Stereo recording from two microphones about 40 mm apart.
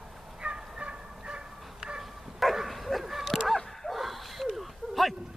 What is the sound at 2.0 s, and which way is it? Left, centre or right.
Bow-wow, centre.